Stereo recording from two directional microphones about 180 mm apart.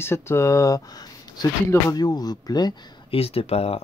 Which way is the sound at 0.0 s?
15° left (ahead or behind).